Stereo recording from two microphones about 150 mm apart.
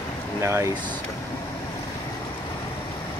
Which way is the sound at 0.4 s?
20° right (ahead or behind).